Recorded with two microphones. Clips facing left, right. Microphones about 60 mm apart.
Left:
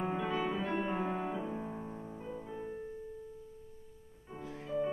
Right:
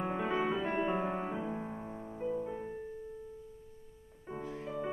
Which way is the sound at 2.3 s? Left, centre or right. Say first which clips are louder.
Right 5 dB; right.